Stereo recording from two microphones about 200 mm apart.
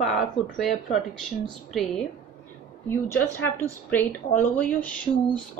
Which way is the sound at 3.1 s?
10° left (ahead or behind).